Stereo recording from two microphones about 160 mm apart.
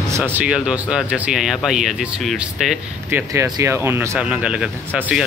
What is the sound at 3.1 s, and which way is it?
Speech, 15° right (ahead or behind).